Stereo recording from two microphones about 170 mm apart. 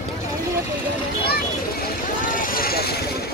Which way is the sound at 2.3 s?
55° left (ahead or behind).